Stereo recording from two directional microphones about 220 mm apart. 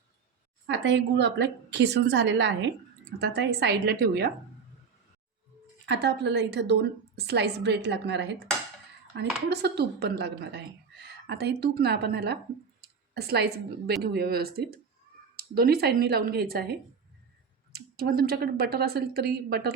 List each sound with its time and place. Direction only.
0.7 s a woman's voice: 50° right (ahead or behind)
5.8 s a woman's voice: 50° right (ahead or behind)